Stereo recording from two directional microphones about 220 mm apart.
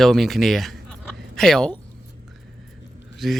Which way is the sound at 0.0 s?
Centre (ahead or behind).